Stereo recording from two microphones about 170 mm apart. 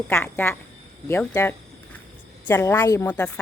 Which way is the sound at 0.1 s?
15° left (ahead or behind).